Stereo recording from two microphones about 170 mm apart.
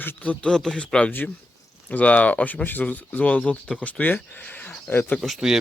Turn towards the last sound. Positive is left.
turn(degrees=-5)  # may be behind; listen again after turning